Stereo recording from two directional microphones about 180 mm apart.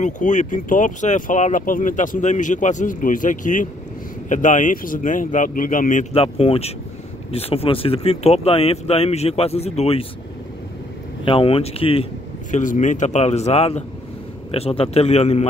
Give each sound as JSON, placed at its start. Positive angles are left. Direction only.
{"t": 0.0, "sound": "speech", "side_deg": 45}
{"t": 6.1, "sound": "speech", "side_deg": 30}
{"t": 11.2, "sound": "speech", "side_deg": 30}